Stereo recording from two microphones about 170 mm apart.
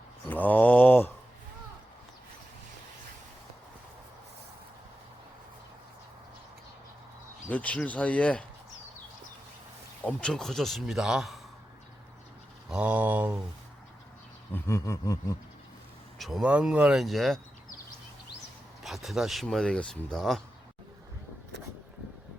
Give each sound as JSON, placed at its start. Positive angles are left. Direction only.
{"t": 0.3, "sound": "mantra", "side_deg": 10}
{"t": 7.5, "sound": "speech", "side_deg": 10}
{"t": 10.0, "sound": "speech", "side_deg": 5}
{"t": 12.7, "sound": "mantra", "side_deg": -5}
{"t": 14.5, "sound": "a sound", "side_deg": 15}
{"t": 16.1, "sound": "speech", "side_deg": 0}
{"t": 18.8, "sound": "speech", "side_deg": 0}